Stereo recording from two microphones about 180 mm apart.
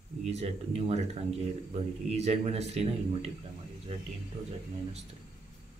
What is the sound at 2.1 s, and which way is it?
Speech, 35° right (ahead or behind).